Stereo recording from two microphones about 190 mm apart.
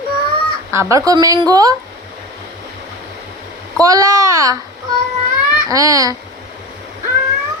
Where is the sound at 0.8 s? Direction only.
15° right (ahead or behind).